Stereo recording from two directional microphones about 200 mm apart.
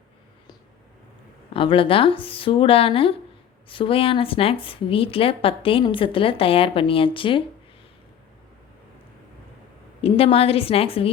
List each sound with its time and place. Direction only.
1.5 s a woman's voice: 25° left (ahead or behind)
10.0 s a woman's voice: 30° left (ahead or behind)